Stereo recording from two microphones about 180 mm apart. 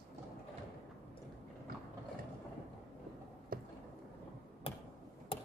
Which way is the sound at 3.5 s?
55° right (ahead or behind).